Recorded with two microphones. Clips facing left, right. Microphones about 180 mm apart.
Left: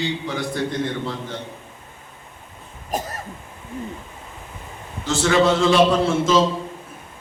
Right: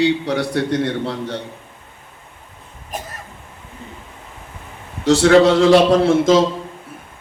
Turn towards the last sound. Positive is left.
turn(degrees=-65)  # may be behind; listen again after turning